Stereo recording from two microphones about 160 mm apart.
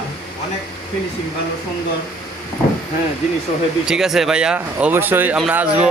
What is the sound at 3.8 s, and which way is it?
Speech, 5° right (ahead or behind).